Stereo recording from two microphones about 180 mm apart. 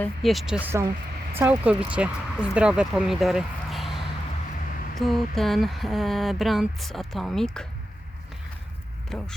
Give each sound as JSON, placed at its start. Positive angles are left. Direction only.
{"t": 0.0, "sound": "speech", "side_deg": 0}
{"t": 4.9, "sound": "speech", "side_deg": 0}
{"t": 9.0, "sound": "speech", "side_deg": 5}